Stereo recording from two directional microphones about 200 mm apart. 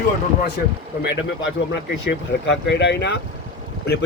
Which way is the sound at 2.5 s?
60° left (ahead or behind).